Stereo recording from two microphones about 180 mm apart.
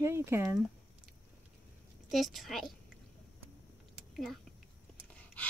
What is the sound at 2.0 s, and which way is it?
Speech, centre (ahead or behind).